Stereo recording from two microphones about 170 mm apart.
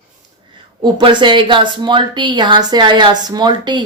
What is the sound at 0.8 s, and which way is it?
Speech, 30° right (ahead or behind).